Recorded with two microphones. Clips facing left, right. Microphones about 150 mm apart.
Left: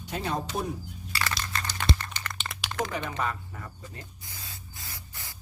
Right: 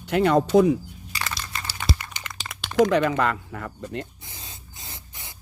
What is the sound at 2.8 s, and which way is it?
Speech, 90° right.